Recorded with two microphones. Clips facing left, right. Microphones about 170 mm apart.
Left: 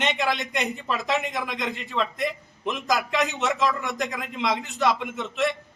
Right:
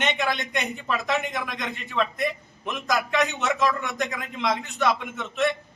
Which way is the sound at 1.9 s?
20° left (ahead or behind).